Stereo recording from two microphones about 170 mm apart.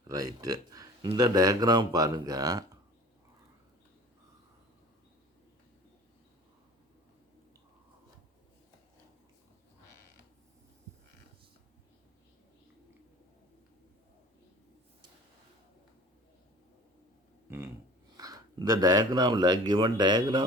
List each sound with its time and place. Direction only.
0.1 s speech: 20° right (ahead or behind)
17.5 s a sound: 15° right (ahead or behind)
18.2 s speech: 20° right (ahead or behind)